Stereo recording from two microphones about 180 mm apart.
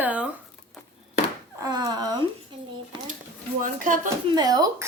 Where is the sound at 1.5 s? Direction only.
20° right (ahead or behind).